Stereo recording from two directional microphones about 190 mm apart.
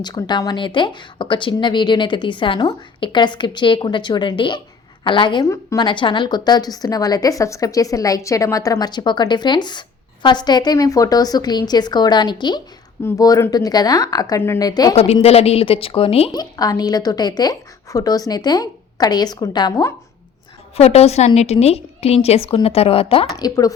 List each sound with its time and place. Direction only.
0.0 s a woman's voice: 20° left (ahead or behind)
14.9 s a woman's voice: 35° left (ahead or behind)
20.7 s a woman's voice: 35° left (ahead or behind)